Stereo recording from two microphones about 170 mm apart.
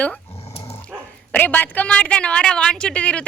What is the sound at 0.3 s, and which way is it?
Dog, 35° left (ahead or behind).